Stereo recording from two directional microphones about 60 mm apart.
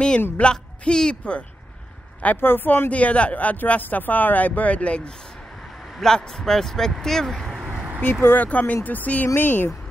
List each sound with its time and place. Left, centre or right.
0.4 s speech: centre
2.4 s speech: left; by 7.8 s centre
8.0 s speech: left
8.5 s speech: left